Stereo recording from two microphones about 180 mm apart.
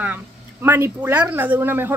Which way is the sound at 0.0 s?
10° right (ahead or behind).